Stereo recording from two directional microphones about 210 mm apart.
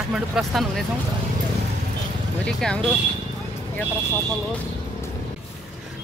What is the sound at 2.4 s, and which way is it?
Speech, 5° left (ahead or behind).